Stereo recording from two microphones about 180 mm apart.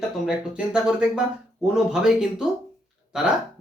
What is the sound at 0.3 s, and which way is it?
Speech, 5° right (ahead or behind).